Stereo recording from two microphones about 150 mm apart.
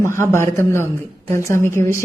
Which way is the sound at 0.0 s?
15° left (ahead or behind).